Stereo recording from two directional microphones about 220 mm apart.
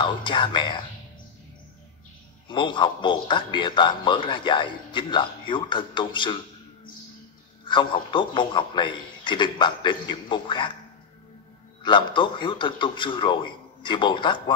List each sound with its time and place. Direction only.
0.0 s a man's voice: 20° left (ahead or behind)
2.4 s a man's voice: 20° left (ahead or behind)
7.6 s a man's voice: 20° left (ahead or behind)
11.8 s a man's voice: 20° left (ahead or behind)